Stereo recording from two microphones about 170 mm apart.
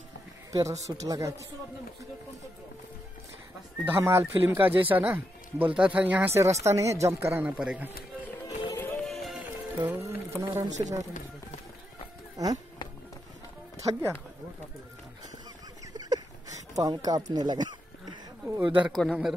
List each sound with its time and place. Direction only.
0.5 s speech: 20° right (ahead or behind)
3.9 s speech: 15° right (ahead or behind)
8.4 s run: 20° left (ahead or behind)
9.0 s music: centre (ahead or behind)
9.8 s speech: 15° right (ahead or behind)
10.5 s speech: 25° right (ahead or behind)
12.4 s speech: 20° right (ahead or behind)
15.8 s a sound: 25° right (ahead or behind)
16.7 s speech: 20° right (ahead or behind)
18.6 s a man's voice: 10° right (ahead or behind)